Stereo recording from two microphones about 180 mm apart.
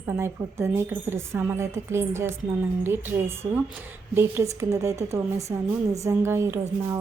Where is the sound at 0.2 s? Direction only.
15° right (ahead or behind).